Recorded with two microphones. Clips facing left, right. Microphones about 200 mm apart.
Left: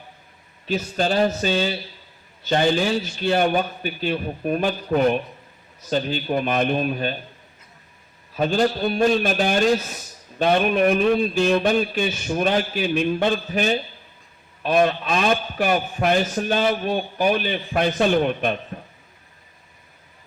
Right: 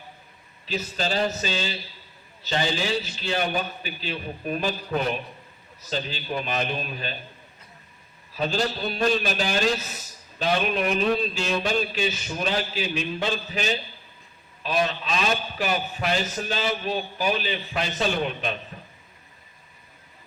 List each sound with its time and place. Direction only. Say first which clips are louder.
0.6 s a man's voice: left 6 dB; 55° left (ahead or behind)
8.4 s a man's voice: left 6 dB; 55° left (ahead or behind)